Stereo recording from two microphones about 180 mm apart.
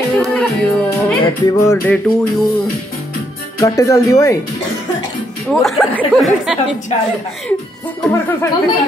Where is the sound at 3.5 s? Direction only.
15° left (ahead or behind).